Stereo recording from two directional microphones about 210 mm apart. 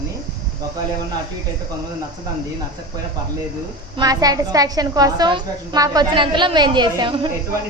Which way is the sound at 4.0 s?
15° right (ahead or behind).